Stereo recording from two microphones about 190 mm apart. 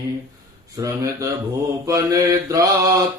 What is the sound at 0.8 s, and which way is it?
Mantra, 20° right (ahead or behind).